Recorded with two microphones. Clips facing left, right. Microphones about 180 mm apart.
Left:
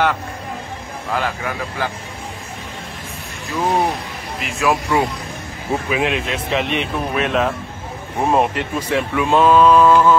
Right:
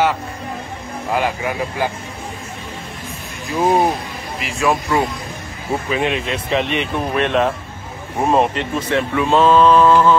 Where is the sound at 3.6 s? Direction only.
20° right (ahead or behind).